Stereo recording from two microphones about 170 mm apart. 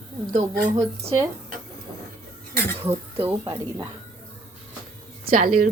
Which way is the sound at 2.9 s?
15° right (ahead or behind).